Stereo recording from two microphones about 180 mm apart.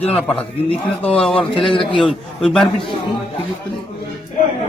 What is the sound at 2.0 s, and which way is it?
Speech, centre (ahead or behind).